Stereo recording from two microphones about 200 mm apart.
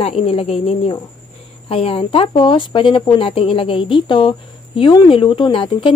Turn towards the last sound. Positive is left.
turn(degrees=25)  # may be behind; listen again after turning